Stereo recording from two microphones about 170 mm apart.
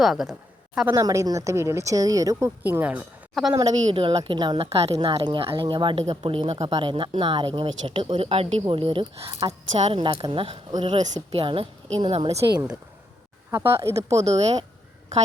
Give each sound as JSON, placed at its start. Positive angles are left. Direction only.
{"t": 0.0, "sound": "a woman's voice", "side_deg": 0}
{"t": 0.9, "sound": "a woman's voice", "side_deg": -20}
{"t": 3.6, "sound": "speech", "side_deg": -35}
{"t": 9.3, "sound": "speech", "side_deg": -20}
{"t": 9.7, "sound": "speech", "side_deg": -40}
{"t": 10.0, "sound": "speech", "side_deg": -25}
{"t": 13.5, "sound": "a woman's voice", "side_deg": -15}
{"t": 14.3, "sound": "speech", "side_deg": -40}